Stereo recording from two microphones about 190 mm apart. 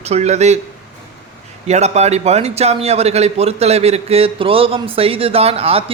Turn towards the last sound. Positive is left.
turn(degrees=-30)  # may be behind; listen again after turning